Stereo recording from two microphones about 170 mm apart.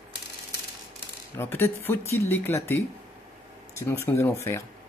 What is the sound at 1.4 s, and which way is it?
Speech, 15° left (ahead or behind).